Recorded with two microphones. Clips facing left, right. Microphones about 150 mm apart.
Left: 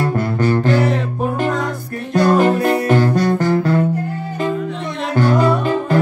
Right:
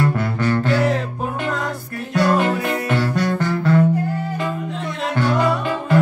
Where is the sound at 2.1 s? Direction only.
40° left (ahead or behind).